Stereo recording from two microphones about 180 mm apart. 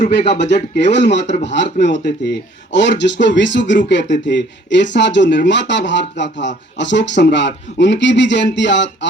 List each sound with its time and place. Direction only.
0.3 s speech: 70° left (ahead or behind)